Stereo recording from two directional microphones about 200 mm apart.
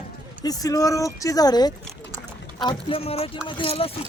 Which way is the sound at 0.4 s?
20° left (ahead or behind).